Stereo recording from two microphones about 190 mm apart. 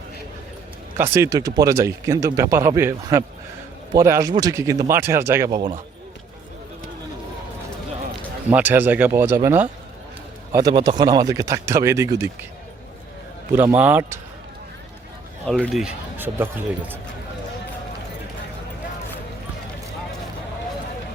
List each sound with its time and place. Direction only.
0.9 s speech: 15° right (ahead or behind)
8.4 s speech: 10° right (ahead or behind)
13.5 s speech: 10° right (ahead or behind)
15.4 s speech: 5° left (ahead or behind)